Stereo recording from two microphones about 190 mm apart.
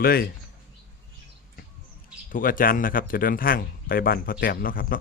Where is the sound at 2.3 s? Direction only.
45° left (ahead or behind).